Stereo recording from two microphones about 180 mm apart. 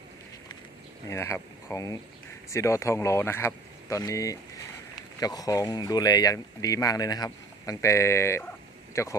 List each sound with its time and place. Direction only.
1.1 s speech: 15° left (ahead or behind)